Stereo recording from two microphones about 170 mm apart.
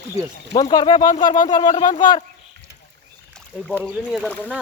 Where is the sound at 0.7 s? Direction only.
25° left (ahead or behind).